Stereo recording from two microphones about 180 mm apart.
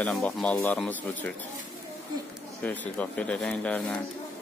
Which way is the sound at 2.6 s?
10° left (ahead or behind).